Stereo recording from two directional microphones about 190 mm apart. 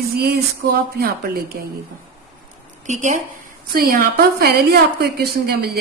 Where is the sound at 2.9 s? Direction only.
40° right (ahead or behind).